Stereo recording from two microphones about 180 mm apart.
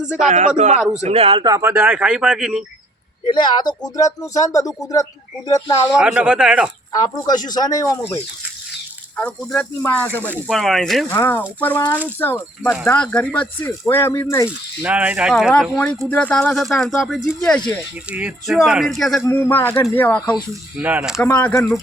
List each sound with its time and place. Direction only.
0.3 s speech: 40° right (ahead or behind); by 2.6 s centre (ahead or behind)
3.2 s speech: 25° left (ahead or behind)
6.0 s speech: 5° right (ahead or behind)
6.9 s speech: 20° left (ahead or behind)
9.1 s speech: 5° left (ahead or behind)
11.1 s speech: 10° left (ahead or behind)
14.8 s speech: 10° right (ahead or behind)
19.2 s speech: 10° left (ahead or behind)
20.7 s speech: 5° right (ahead or behind)
21.2 s speech: 10° left (ahead or behind)